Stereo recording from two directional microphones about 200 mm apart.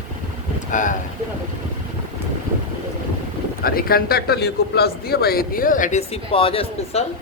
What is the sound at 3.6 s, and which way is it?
A man's voice, 50° left (ahead or behind).